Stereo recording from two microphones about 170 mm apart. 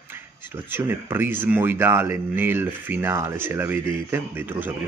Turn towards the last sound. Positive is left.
turn(degrees=-10)  # may be behind; listen again after turning